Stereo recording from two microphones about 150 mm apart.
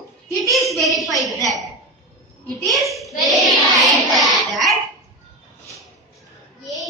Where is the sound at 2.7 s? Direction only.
Centre (ahead or behind).